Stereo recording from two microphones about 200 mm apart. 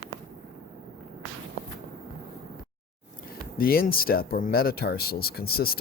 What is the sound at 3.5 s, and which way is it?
Speech, 45° left (ahead or behind).